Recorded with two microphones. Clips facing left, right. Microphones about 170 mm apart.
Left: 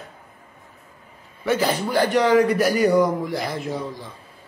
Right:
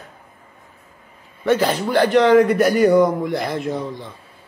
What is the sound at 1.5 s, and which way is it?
Speech, 10° left (ahead or behind).